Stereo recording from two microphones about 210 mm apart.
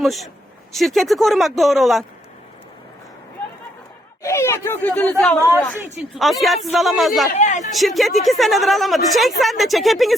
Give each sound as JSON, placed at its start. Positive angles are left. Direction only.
{"t": 0.0, "sound": "a woman's voice", "side_deg": 0}
{"t": 4.2, "sound": "a woman's voice", "side_deg": 15}
{"t": 7.3, "sound": "speech", "side_deg": 35}
{"t": 7.8, "sound": "a woman's voice", "side_deg": 0}